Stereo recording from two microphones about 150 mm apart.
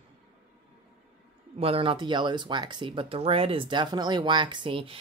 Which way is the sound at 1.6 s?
40° right (ahead or behind).